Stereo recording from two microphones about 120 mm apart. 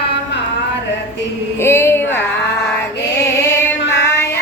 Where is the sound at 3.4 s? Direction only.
20° left (ahead or behind).